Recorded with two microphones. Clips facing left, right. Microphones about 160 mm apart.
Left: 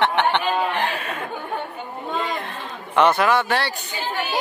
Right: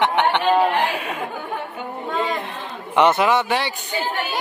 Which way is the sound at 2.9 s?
20° right (ahead or behind).